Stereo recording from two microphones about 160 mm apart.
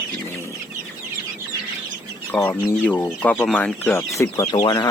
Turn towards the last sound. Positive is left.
turn(degrees=25)  # may be behind; listen again after turning